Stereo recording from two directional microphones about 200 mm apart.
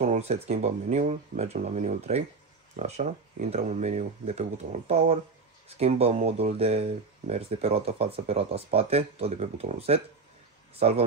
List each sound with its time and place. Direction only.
0.0 s speech: 35° right (ahead or behind)